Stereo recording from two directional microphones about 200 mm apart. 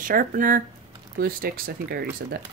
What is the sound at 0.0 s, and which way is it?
Speech, 45° right (ahead or behind).